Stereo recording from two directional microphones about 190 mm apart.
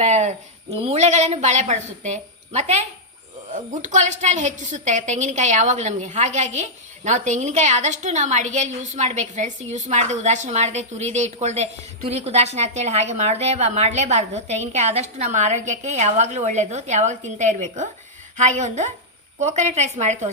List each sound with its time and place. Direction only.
0.0 s a woman's voice: 40° right (ahead or behind)